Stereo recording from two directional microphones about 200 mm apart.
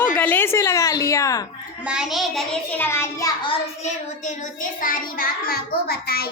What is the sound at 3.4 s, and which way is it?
A child's voice, 35° left (ahead or behind).